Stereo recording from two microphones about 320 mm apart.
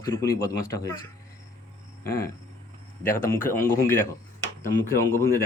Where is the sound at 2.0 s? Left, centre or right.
Left.